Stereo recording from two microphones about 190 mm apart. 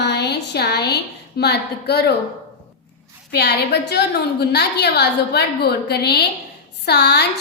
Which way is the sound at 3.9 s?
60° left (ahead or behind).